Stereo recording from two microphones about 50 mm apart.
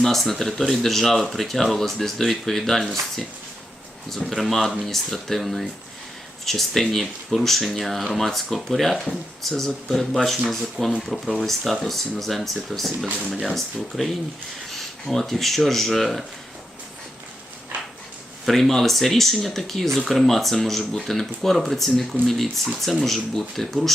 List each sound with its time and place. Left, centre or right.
0.0 s speech: centre
15.1 s speech: centre
18.4 s speech: centre